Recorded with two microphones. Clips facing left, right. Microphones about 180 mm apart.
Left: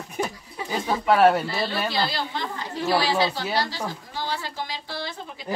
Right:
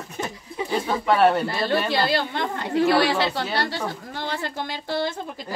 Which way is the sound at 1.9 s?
55° right (ahead or behind).